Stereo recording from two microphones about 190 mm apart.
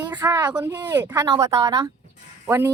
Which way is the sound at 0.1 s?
20° right (ahead or behind).